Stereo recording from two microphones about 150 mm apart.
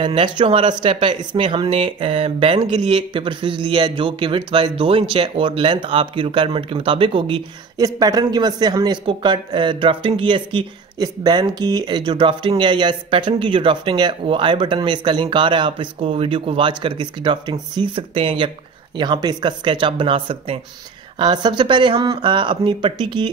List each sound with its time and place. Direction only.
0.0 s speech: 35° right (ahead or behind)